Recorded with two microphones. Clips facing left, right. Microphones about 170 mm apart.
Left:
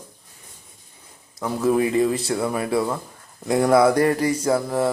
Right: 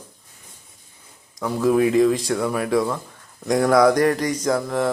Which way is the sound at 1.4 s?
5° left (ahead or behind).